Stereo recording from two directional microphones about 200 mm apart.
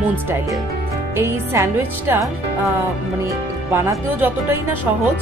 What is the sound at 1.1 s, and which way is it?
Speech, 10° right (ahead or behind).